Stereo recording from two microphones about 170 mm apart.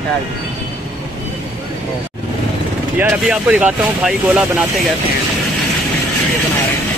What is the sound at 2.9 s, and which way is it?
Speech, 10° right (ahead or behind).